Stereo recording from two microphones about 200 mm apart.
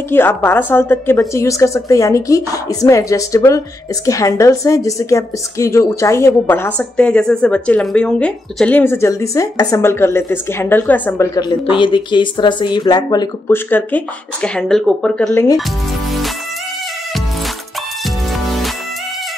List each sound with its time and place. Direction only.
0.1 s speech: 10° left (ahead or behind)